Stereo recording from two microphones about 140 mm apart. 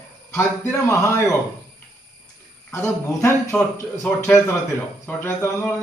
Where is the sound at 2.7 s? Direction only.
20° left (ahead or behind).